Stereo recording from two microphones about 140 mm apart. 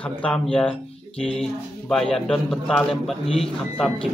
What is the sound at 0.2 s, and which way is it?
A man's voice, 5° left (ahead or behind).